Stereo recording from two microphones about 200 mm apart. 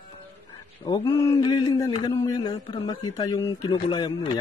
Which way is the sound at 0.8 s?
20° left (ahead or behind).